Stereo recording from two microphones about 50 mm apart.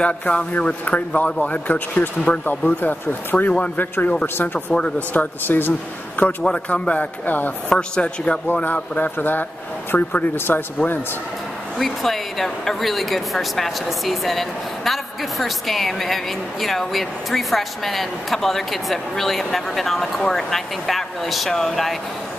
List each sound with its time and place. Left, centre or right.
0.2 s speech: left
2.8 s speech: left
4.7 s speech: left
5.5 s speech: left
6.4 s speech: left
7.7 s speech: centre
8.9 s speech: left
10.2 s speech: left
11.8 s speech: centre